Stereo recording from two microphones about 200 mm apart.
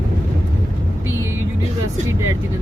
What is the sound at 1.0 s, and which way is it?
Vehicle, 15° right (ahead or behind).